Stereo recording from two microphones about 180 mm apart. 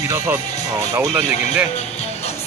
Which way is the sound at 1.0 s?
5° right (ahead or behind).